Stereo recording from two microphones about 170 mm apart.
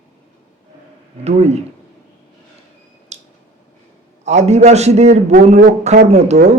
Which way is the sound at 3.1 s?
40° right (ahead or behind).